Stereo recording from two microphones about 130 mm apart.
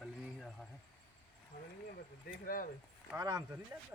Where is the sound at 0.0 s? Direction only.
5° left (ahead or behind).